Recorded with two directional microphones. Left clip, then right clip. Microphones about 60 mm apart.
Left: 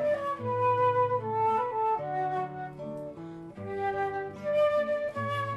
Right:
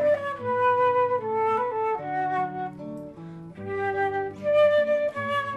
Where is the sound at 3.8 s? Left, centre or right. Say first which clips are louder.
Right 5 dB; right.